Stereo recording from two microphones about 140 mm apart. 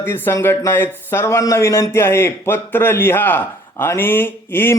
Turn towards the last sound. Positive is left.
turn(degrees=15)  # may be behind; listen again after turning